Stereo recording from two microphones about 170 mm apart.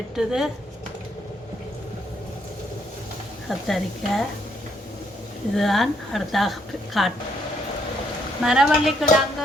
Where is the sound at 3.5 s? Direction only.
Centre (ahead or behind).